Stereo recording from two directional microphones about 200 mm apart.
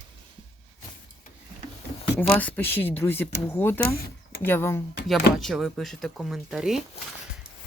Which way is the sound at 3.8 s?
50° left (ahead or behind).